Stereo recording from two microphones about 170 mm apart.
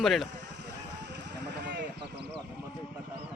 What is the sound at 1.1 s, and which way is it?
Vehicle, 80° right.